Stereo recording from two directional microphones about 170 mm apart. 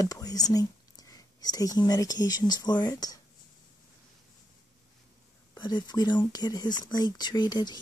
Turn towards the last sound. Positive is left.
turn(degrees=25)  # may be behind; listen again after turning